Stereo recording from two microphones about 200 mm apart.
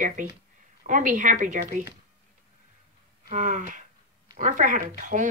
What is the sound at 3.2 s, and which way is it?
A woman's voice, 40° right (ahead or behind).